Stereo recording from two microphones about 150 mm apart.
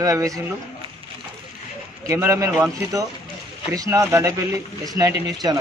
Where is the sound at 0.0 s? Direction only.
20° right (ahead or behind).